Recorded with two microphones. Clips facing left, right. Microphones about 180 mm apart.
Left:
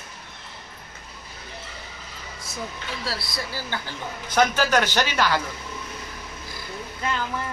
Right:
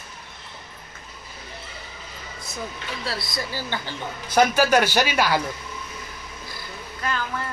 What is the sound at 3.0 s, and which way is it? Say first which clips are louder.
Speech: right 3 dB; centre (ahead or behind).